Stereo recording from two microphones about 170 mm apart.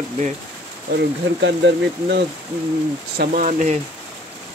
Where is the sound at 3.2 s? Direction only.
50° right (ahead or behind).